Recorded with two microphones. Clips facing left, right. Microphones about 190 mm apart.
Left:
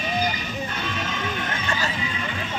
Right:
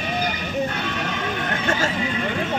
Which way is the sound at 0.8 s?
65° right (ahead or behind).